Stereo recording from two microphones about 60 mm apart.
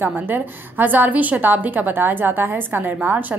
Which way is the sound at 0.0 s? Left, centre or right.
Right.